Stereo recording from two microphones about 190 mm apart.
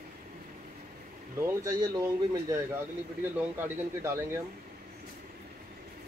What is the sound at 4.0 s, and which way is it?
Speech, 15° right (ahead or behind).